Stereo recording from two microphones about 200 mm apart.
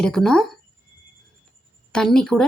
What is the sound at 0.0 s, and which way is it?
Speech, 5° left (ahead or behind).